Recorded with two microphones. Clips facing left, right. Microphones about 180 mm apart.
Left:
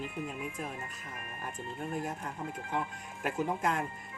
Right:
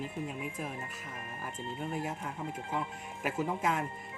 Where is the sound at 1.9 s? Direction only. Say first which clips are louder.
Even; 5° right (ahead or behind).